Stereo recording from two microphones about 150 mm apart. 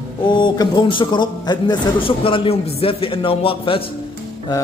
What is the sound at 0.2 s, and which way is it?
A man's voice, 30° left (ahead or behind).